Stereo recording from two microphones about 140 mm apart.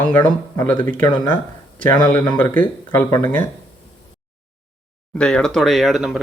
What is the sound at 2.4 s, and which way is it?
Speech, 15° left (ahead or behind).